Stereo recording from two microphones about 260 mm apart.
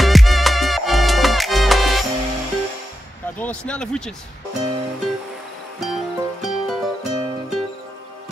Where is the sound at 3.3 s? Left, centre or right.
Centre.